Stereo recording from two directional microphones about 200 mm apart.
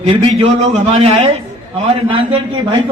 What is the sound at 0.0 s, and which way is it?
A man's voice, 25° right (ahead or behind).